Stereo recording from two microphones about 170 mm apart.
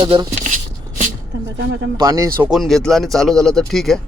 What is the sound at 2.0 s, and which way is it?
Speech, 20° right (ahead or behind).